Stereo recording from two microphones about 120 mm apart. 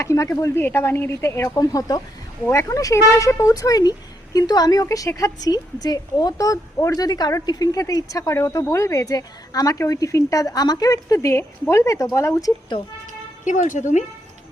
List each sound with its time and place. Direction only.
0.0 s a woman's voice: 25° left (ahead or behind)
13.4 s speech: 90° left